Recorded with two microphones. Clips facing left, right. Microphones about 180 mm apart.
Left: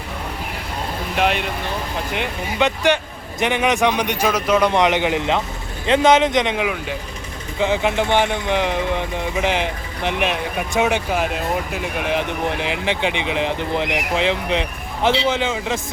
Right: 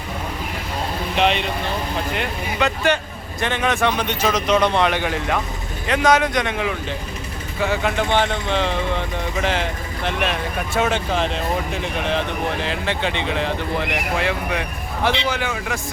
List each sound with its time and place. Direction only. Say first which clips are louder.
1.1 s speech: right 1 dB; 5° left (ahead or behind)